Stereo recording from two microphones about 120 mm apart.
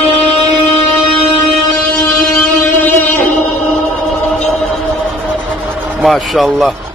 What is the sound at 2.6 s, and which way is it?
Music, 20° left (ahead or behind).